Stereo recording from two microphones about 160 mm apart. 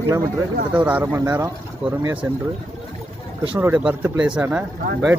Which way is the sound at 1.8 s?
5° right (ahead or behind).